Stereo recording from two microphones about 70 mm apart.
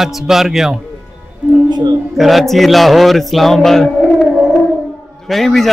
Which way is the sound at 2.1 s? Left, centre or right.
Centre.